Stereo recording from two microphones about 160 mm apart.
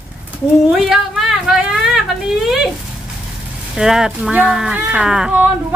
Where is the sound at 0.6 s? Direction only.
5° right (ahead or behind).